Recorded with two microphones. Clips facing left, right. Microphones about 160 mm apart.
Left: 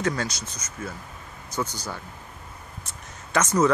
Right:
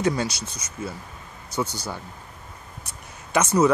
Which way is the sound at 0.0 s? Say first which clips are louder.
Right 3 dB; 10° right (ahead or behind).